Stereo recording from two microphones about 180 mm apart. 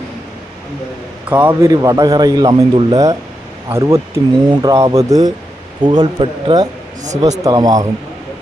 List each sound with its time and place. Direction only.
1.3 s a man's voice: 10° right (ahead or behind)